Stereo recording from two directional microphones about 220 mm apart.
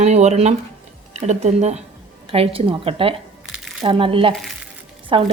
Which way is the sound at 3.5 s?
Centre (ahead or behind).